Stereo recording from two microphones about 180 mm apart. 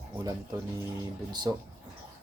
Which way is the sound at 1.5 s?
20° right (ahead or behind).